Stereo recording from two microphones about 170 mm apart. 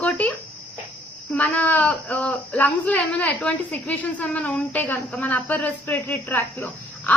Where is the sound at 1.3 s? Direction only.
10° left (ahead or behind).